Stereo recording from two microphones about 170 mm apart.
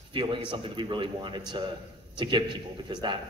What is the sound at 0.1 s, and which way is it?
A man's voice, 30° right (ahead or behind).